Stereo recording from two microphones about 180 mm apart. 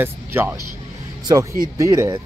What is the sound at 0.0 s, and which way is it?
Speech, 10° right (ahead or behind).